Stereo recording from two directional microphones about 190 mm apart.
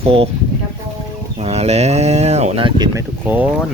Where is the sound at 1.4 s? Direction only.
35° right (ahead or behind).